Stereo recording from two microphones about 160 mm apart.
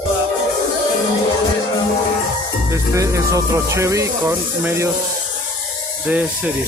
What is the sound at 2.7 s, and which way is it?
Speech, 20° right (ahead or behind).